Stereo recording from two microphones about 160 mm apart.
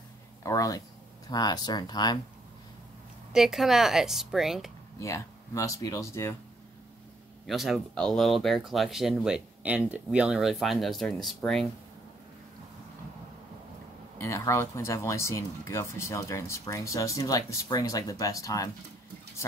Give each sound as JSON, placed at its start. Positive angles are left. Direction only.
{"t": 0.4, "sound": "speech", "side_deg": 20}
{"t": 3.3, "sound": "speech", "side_deg": 0}
{"t": 4.9, "sound": "speech", "side_deg": 20}
{"t": 7.4, "sound": "speech", "side_deg": 0}
{"t": 14.2, "sound": "speech", "side_deg": 20}